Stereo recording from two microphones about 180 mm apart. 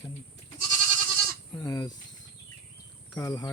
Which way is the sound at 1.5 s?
20° left (ahead or behind).